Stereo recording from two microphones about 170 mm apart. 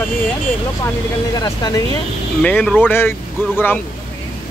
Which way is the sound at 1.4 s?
20° left (ahead or behind).